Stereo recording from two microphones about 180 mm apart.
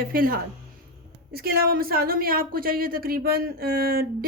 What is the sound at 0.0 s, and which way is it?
Speech, 55° right (ahead or behind).